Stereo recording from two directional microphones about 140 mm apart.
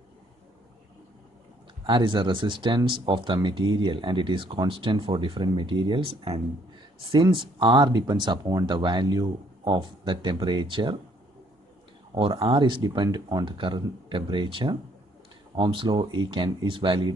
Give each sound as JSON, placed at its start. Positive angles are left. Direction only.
{"t": 1.9, "sound": "speech", "side_deg": -35}
{"t": 12.1, "sound": "speech", "side_deg": -40}